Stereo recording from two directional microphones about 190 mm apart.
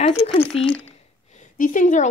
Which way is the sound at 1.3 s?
45° left (ahead or behind).